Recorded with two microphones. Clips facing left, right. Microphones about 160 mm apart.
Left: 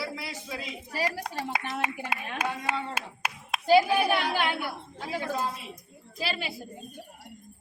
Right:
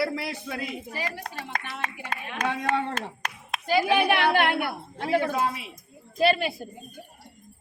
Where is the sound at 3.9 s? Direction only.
70° right (ahead or behind).